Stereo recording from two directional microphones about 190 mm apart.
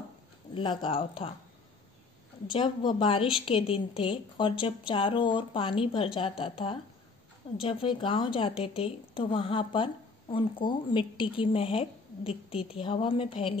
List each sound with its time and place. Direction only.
0.6 s a woman's voice: 30° left (ahead or behind)
2.5 s a woman's voice: 25° left (ahead or behind)